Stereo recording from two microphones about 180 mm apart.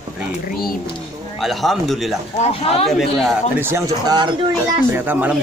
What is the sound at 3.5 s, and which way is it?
Speech, 10° right (ahead or behind).